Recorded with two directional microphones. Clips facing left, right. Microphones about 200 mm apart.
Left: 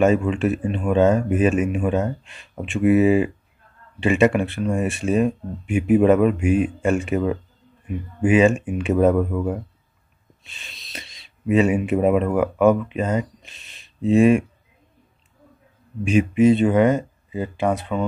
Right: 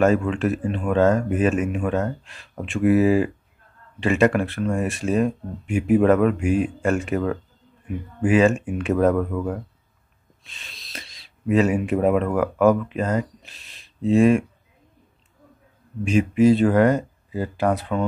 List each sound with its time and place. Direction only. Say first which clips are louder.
0.0 s speech: left 1 dB; 5° left (ahead or behind)
13.4 s a sound: even; centre (ahead or behind)
16.0 s speech: left 1 dB; 5° left (ahead or behind)